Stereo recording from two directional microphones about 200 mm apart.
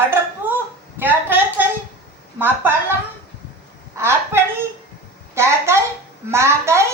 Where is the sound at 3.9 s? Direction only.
15° right (ahead or behind).